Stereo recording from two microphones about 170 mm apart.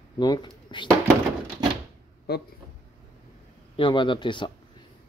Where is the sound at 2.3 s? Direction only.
70° left (ahead or behind).